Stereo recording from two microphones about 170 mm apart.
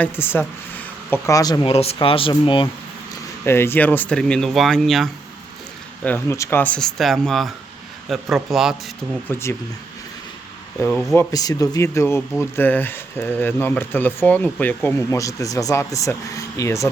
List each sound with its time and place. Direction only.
0.0 s speech: 15° left (ahead or behind)
1.7 s speech: 35° left (ahead or behind)
3.4 s speech: 15° left (ahead or behind)
6.1 s speech: 15° left (ahead or behind); by 8.7 s centre (ahead or behind)
9.3 s speech: 15° left (ahead or behind)
10.8 s speech: 5° left (ahead or behind)
11.1 s speech: 20° left (ahead or behind)